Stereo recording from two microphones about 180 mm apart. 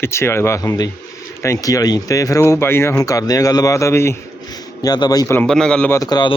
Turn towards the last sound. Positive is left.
turn(degrees=25)  # may be behind; listen again after turning